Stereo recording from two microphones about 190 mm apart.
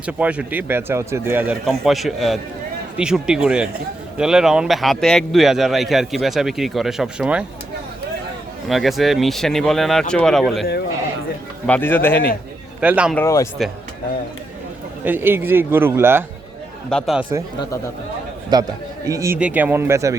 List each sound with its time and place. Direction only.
0.0 s speech: 5° right (ahead or behind)
1.6 s a man's voice: centre (ahead or behind)
8.6 s a man's voice: centre (ahead or behind)
12.8 s speech: 5° right (ahead or behind)
13.1 s speech: 15° left (ahead or behind)
15.0 s speech: 10° right (ahead or behind)
16.9 s a man's voice: centre (ahead or behind)
18.5 s a man's voice: 20° right (ahead or behind)